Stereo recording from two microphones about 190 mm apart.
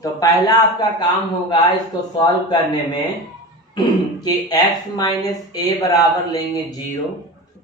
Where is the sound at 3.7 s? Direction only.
20° left (ahead or behind).